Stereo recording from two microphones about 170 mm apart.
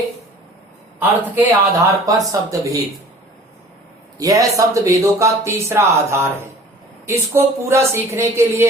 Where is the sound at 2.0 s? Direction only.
20° right (ahead or behind).